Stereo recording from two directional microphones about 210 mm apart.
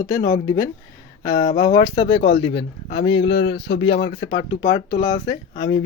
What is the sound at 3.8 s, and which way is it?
Speech, 25° left (ahead or behind).